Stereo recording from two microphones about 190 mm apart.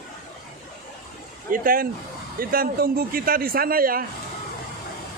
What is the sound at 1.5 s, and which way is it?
A man's voice, 50° right (ahead or behind).